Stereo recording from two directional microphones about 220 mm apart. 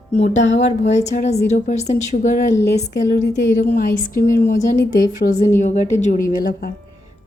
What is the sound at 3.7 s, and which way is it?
A woman's voice, 40° left (ahead or behind).